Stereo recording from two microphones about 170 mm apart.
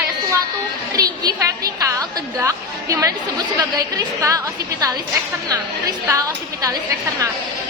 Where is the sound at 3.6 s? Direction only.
20° right (ahead or behind).